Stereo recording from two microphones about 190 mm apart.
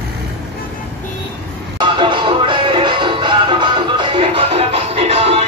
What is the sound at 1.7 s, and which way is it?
Music, 25° right (ahead or behind).